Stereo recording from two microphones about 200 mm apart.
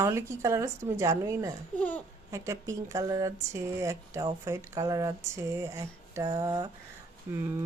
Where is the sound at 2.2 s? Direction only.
15° right (ahead or behind).